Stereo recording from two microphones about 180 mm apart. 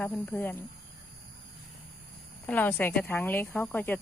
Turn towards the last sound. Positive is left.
turn(degrees=10)  # may be behind; listen again after turning